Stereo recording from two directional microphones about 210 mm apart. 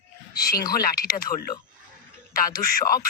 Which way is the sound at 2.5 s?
15° left (ahead or behind).